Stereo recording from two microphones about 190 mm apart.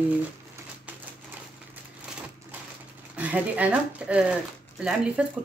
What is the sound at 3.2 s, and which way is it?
Speech, 10° right (ahead or behind).